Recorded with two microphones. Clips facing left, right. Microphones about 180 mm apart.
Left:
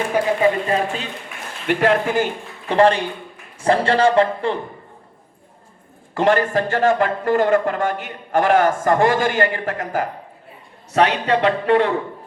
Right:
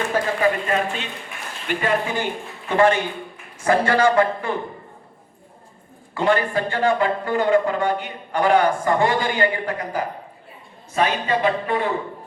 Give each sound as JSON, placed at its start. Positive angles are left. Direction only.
{"t": 0.1, "sound": "speech", "side_deg": 20}
{"t": 1.6, "sound": "speech", "side_deg": 70}
{"t": 2.6, "sound": "a man's voice", "side_deg": 35}
{"t": 6.1, "sound": "a man's voice", "side_deg": 45}
{"t": 10.9, "sound": "speech", "side_deg": 70}